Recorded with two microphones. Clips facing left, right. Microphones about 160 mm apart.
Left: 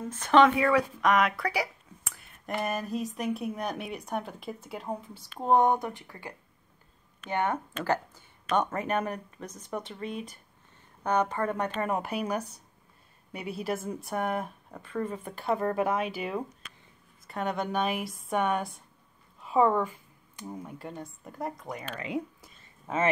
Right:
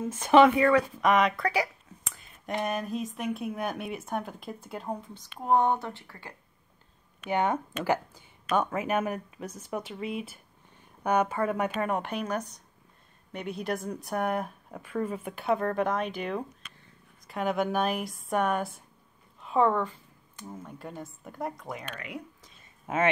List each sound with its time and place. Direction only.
0.0 s speech: 10° right (ahead or behind)
0.6 s speech: 5° left (ahead or behind)
5.4 s speech: 20° left (ahead or behind)
7.2 s speech: 15° right (ahead or behind)
11.9 s speech: 5° left (ahead or behind)
19.4 s a sound: 5° left (ahead or behind)
20.8 s speech: centre (ahead or behind)